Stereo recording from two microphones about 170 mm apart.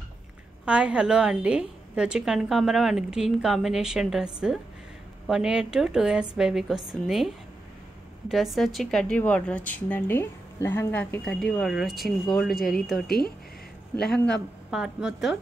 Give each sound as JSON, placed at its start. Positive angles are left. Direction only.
{"t": 0.7, "sound": "a woman's voice", "side_deg": -5}
{"t": 12.4, "sound": "speech", "side_deg": 60}
{"t": 13.9, "sound": "speech", "side_deg": 75}
{"t": 14.7, "sound": "a woman's voice", "side_deg": -5}